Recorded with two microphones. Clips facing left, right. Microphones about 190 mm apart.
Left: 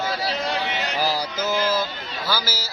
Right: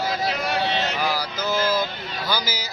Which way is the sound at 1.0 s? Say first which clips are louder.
Left 1 dB; 30° left (ahead or behind).